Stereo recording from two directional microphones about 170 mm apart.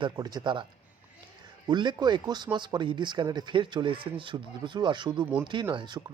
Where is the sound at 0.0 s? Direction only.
25° right (ahead or behind).